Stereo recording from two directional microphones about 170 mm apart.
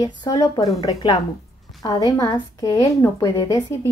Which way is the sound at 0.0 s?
20° left (ahead or behind).